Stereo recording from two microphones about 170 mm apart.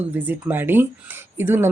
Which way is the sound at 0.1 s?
10° right (ahead or behind).